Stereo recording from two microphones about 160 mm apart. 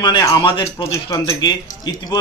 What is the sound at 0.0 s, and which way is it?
Speech, 25° left (ahead or behind).